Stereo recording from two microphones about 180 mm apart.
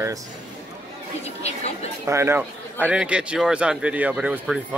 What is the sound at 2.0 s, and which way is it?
A man's voice, 15° right (ahead or behind).